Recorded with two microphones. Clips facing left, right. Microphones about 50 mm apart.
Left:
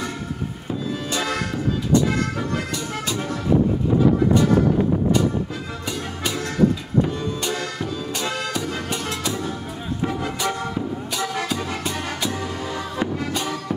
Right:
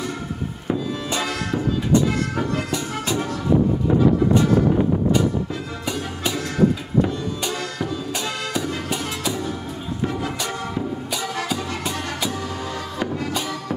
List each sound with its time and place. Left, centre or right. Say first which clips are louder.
0.8 s music: even; centre
1.5 s a sound: right 2 dB; right
5.9 s music: right 2 dB; centre
7.4 s music: even; centre
12.6 s music: left 1 dB; centre